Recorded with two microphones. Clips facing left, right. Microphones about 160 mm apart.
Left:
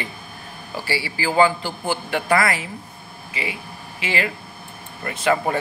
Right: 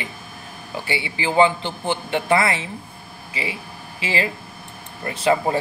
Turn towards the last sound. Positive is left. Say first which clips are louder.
# right 1 dB
turn(degrees=-25)  # may be behind; listen again after turning